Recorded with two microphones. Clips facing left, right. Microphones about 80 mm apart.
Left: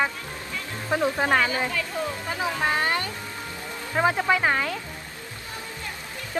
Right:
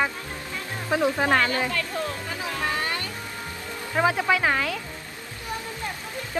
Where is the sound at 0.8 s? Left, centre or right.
Centre.